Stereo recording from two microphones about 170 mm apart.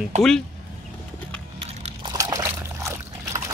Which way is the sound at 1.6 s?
25° right (ahead or behind).